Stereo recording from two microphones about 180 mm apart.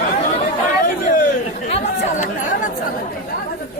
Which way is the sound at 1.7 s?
40° left (ahead or behind).